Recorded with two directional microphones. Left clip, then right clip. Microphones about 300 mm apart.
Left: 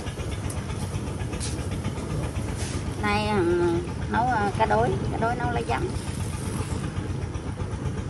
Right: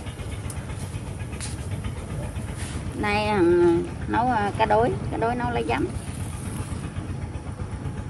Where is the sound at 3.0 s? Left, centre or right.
Right.